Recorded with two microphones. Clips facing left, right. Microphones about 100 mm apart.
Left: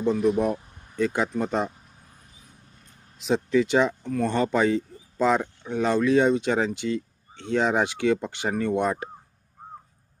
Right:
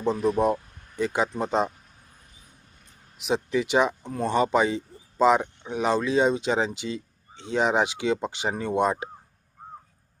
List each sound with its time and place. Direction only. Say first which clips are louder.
0.0 s speech: left 1 dB; 25° right (ahead or behind)
0.9 s speech: left 1 dB; 15° right (ahead or behind)
3.2 s speech: left 3 dB; 15° right (ahead or behind)